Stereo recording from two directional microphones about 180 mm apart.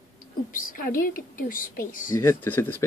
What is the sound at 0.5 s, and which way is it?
A woman's voice, 50° left (ahead or behind).